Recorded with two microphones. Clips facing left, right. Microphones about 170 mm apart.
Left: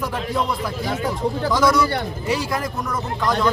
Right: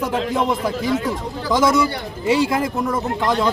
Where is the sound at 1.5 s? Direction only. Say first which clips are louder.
Right 3 dB; 25° right (ahead or behind).